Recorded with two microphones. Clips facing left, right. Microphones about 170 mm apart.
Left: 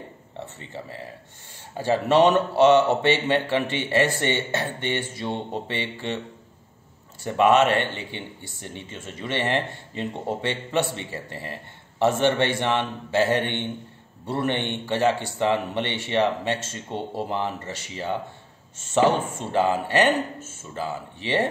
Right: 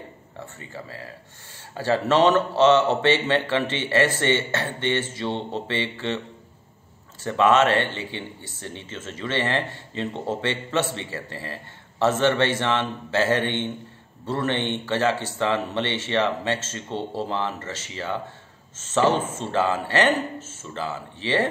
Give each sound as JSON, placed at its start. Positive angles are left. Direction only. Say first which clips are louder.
{"t": 0.6, "sound": "speech", "louder": "left 1 dB", "side_deg": 20}
{"t": 7.2, "sound": "speech", "louder": "even", "side_deg": 15}